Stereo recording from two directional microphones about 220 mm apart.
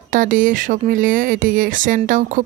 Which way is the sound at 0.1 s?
40° right (ahead or behind).